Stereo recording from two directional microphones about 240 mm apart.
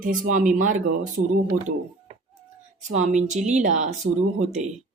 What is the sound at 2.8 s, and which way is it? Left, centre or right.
A woman's voice, right.